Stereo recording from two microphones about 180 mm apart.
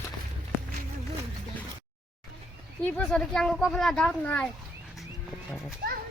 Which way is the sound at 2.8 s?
5° left (ahead or behind).